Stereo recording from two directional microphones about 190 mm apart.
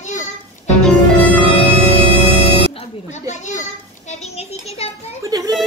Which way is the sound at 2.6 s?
30° left (ahead or behind).